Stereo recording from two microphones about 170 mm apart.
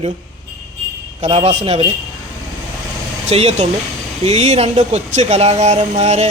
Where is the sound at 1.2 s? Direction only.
35° right (ahead or behind).